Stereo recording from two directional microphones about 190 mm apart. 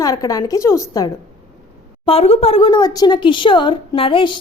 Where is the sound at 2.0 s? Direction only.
30° left (ahead or behind).